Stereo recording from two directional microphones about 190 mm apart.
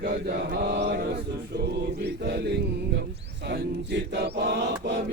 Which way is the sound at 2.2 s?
60° right (ahead or behind).